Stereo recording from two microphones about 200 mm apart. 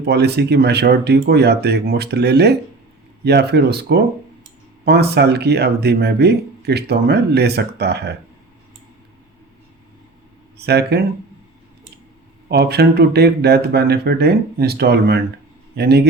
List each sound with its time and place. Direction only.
0.0 s speech: 55° right (ahead or behind)
10.6 s speech: 55° right (ahead or behind)
12.5 s a man's voice: 55° right (ahead or behind)